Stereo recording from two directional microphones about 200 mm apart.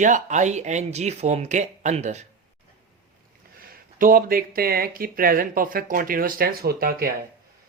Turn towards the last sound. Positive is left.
turn(degrees=-50)  # may be behind; listen again after turning